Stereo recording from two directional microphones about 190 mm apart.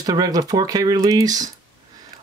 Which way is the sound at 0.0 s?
20° right (ahead or behind).